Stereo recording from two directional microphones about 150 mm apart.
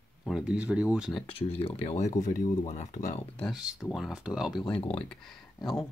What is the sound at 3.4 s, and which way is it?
Speech, 5° right (ahead or behind).